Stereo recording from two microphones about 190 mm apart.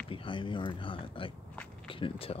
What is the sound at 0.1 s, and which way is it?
Speech, 25° left (ahead or behind).